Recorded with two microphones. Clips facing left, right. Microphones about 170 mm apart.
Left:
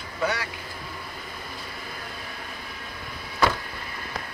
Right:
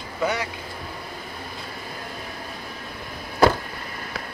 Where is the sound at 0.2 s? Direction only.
20° right (ahead or behind).